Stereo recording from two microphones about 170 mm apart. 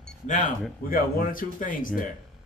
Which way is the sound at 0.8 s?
55° left (ahead or behind).